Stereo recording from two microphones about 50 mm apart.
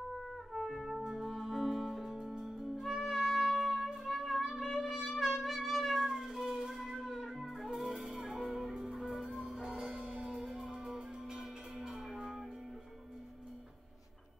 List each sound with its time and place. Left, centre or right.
0.5 s music: centre